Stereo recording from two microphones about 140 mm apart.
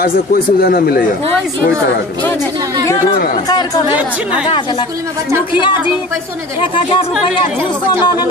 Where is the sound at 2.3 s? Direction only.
25° right (ahead or behind).